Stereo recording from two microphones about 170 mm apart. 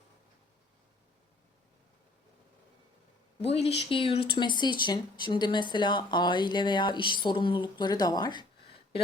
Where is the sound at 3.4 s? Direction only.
35° left (ahead or behind).